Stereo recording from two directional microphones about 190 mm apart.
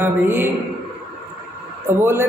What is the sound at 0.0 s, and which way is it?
Speech, 10° right (ahead or behind).